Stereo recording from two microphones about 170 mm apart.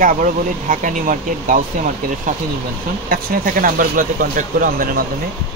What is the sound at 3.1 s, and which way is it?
Speech, 55° right (ahead or behind).